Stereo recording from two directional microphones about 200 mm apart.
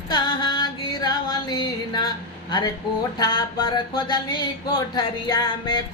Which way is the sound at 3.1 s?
20° left (ahead or behind).